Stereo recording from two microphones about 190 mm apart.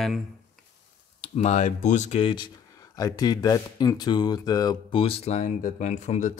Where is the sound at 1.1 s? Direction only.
35° left (ahead or behind).